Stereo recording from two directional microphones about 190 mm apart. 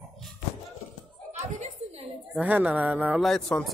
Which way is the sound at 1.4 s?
35° right (ahead or behind).